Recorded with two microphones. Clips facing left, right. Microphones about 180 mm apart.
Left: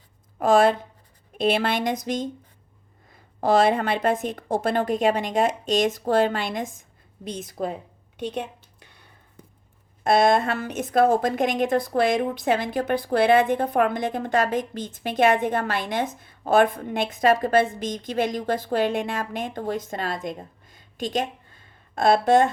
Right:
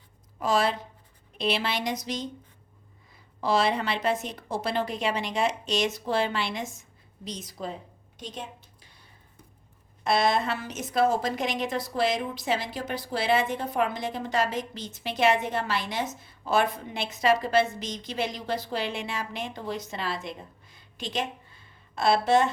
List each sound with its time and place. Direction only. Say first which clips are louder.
0.3 s a woman's voice: left 7 dB; 55° left (ahead or behind)
7.3 s a sound: left 6 dB; 55° left (ahead or behind)
10.0 s a woman's voice: left 6 dB; 50° left (ahead or behind)